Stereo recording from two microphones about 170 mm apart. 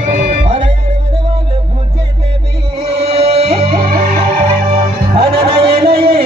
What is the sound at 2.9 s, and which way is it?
Music, 35° right (ahead or behind).